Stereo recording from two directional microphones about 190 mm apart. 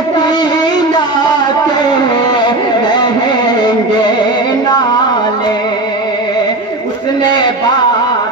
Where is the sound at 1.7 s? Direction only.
20° left (ahead or behind).